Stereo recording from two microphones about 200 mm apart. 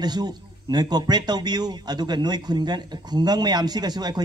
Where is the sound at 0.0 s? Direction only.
20° right (ahead or behind).